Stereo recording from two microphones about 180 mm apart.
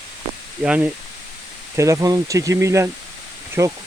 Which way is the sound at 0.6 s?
5° right (ahead or behind).